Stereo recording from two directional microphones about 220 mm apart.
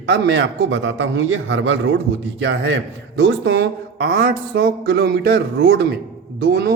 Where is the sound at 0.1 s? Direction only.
50° right (ahead or behind).